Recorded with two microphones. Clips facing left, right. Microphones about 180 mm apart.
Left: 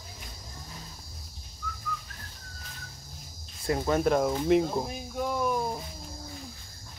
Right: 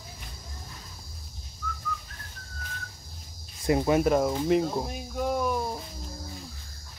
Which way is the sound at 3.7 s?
10° right (ahead or behind).